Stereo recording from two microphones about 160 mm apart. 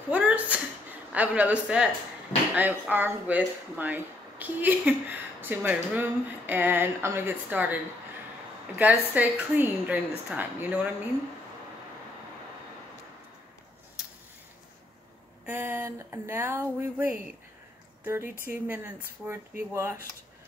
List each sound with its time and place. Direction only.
0.1 s speech: 10° right (ahead or behind)
8.7 s speech: 10° right (ahead or behind)
15.4 s speech: 15° right (ahead or behind)